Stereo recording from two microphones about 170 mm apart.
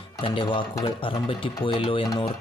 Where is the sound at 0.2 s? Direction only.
30° left (ahead or behind).